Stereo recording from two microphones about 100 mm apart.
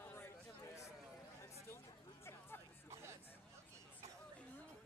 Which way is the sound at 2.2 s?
25° left (ahead or behind).